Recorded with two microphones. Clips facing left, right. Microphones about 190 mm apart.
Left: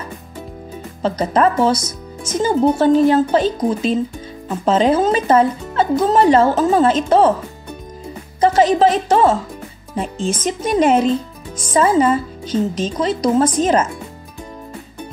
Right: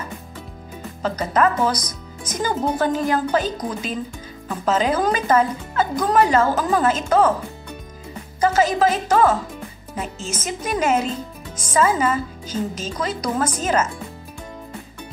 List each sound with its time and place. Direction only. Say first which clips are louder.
1.0 s speech: left 4 dB; 30° left (ahead or behind)
8.4 s speech: left 5 dB; 30° left (ahead or behind)